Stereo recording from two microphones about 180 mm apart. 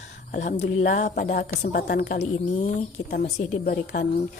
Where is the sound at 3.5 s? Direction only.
50° left (ahead or behind).